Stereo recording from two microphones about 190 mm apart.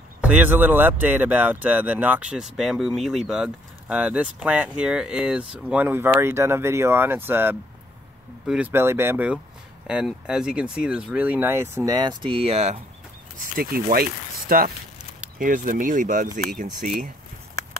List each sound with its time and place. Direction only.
0.2 s speech: 10° right (ahead or behind); by 12.8 s 35° right (ahead or behind)
13.4 s speech: 50° right (ahead or behind)